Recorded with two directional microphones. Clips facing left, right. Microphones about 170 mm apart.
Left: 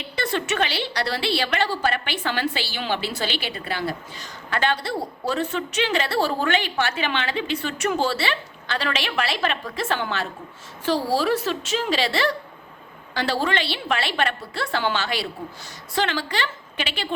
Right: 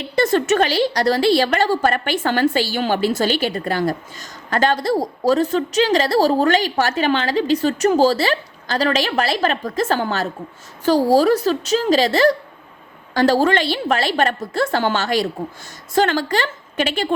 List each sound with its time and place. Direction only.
0.2 s a woman's voice: 45° right (ahead or behind)